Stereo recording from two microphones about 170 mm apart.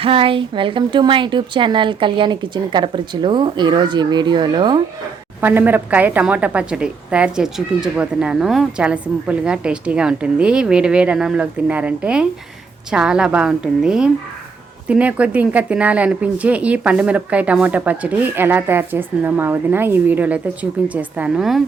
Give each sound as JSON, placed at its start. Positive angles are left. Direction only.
{"t": 0.0, "sound": "a woman's voice", "side_deg": -30}
{"t": 5.4, "sound": "a woman's voice", "side_deg": -10}